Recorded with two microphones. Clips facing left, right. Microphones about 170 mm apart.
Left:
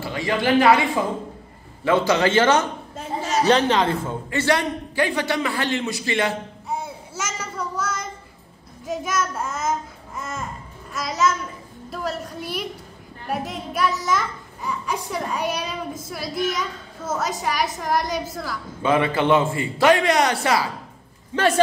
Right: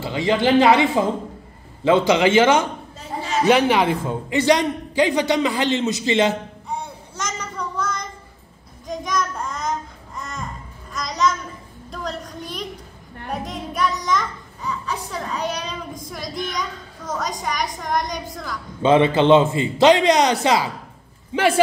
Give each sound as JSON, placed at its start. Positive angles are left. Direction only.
{"t": 0.0, "sound": "a man's voice", "side_deg": -20}
{"t": 3.0, "sound": "a sound", "side_deg": 45}
{"t": 3.4, "sound": "a man's voice", "side_deg": -10}
{"t": 6.7, "sound": "child singing", "side_deg": 5}
{"t": 8.8, "sound": "babbling", "side_deg": 5}
{"t": 11.9, "sound": "a woman's voice", "side_deg": 5}
{"t": 18.8, "sound": "a man's voice", "side_deg": -25}